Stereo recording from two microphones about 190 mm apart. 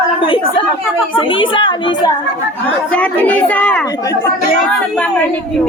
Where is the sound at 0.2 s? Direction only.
25° left (ahead or behind).